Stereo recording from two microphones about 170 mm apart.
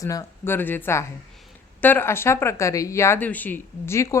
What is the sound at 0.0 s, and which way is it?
A woman's voice, 20° left (ahead or behind).